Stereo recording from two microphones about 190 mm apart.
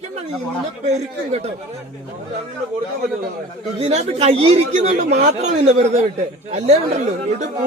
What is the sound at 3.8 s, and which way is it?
A man's voice, 35° right (ahead or behind).